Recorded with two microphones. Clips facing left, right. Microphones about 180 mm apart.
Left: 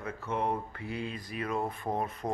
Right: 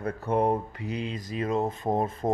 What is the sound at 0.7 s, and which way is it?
Speech, 20° right (ahead or behind).